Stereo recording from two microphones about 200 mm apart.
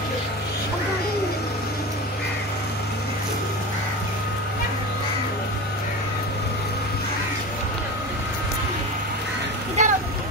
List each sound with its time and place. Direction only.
9.8 s vehicle: 35° right (ahead or behind)